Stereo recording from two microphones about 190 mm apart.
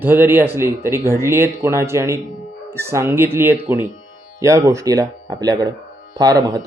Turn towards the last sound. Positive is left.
turn(degrees=-20)  # may be behind; listen again after turning